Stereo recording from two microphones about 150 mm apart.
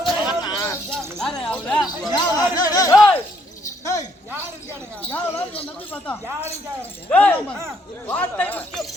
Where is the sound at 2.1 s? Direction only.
25° left (ahead or behind).